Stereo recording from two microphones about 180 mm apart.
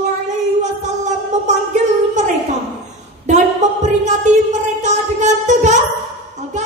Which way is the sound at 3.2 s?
40° right (ahead or behind).